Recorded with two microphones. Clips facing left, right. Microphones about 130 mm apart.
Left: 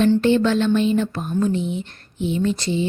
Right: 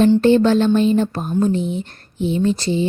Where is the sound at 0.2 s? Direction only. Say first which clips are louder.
Right 4 dB; 40° right (ahead or behind).